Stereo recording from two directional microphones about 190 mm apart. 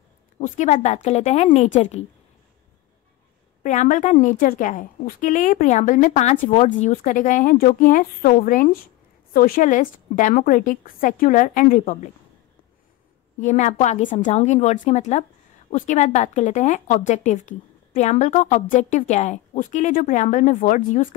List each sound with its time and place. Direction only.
0.4 s a woman's voice: 40° left (ahead or behind)
3.6 s a woman's voice: 40° left (ahead or behind)
13.4 s a woman's voice: 40° left (ahead or behind)